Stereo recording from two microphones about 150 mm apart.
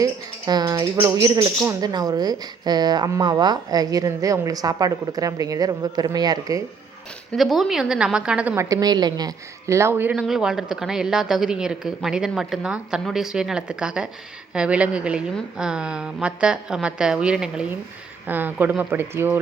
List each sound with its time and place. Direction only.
0.0 s a sound: 25° right (ahead or behind)
1.8 s a woman's voice: 25° right (ahead or behind)
7.3 s a woman's voice: centre (ahead or behind)
8.5 s a woman's voice: 25° right (ahead or behind)